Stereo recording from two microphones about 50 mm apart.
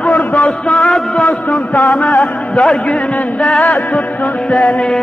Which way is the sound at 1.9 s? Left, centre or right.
Left.